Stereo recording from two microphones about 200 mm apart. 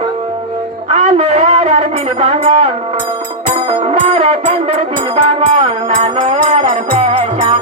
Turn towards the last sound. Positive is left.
turn(degrees=-30)  # may be behind; listen again after turning